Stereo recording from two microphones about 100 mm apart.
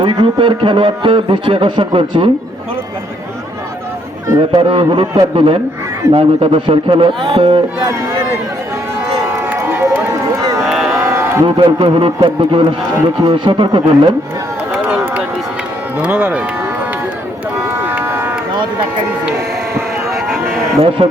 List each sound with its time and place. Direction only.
0.0 s a man's voice: 55° right (ahead or behind)
4.4 s a man's voice: 55° right (ahead or behind)
6.1 s a man's voice: 70° right (ahead or behind)
9.4 s run: 20° right (ahead or behind)
10.2 s run: 35° right (ahead or behind)
10.8 s a sound: 30° right (ahead or behind)
11.4 s a man's voice: 60° right (ahead or behind)
14.8 s run: 15° right (ahead or behind)
16.0 s speech: 15° right (ahead or behind)
17.6 s run: 25° right (ahead or behind)
19.7 s vehicle: 25° right (ahead or behind)
21.0 s speech: 90° right